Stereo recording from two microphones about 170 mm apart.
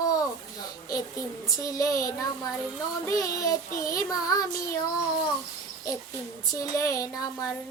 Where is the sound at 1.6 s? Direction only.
20° left (ahead or behind).